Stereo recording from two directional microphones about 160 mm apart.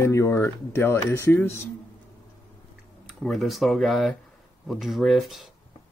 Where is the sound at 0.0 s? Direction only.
20° left (ahead or behind).